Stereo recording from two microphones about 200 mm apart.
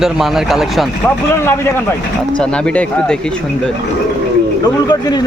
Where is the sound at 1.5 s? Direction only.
15° left (ahead or behind).